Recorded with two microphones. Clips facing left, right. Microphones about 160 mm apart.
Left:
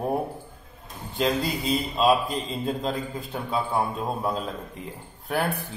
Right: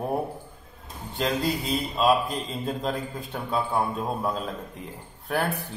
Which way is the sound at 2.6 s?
Centre (ahead or behind).